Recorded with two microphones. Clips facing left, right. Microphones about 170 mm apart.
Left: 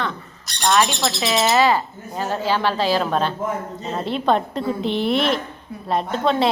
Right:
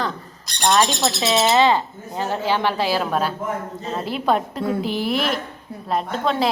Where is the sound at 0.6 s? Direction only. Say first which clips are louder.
Even; 30° right (ahead or behind).